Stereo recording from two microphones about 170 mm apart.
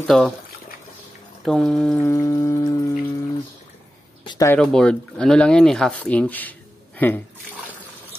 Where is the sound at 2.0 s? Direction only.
15° left (ahead or behind).